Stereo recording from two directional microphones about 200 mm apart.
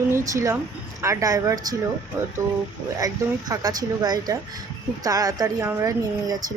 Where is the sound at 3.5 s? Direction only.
20° right (ahead or behind).